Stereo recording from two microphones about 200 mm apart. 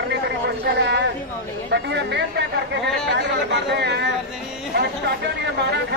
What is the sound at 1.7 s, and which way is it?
Speech, 60° right (ahead or behind).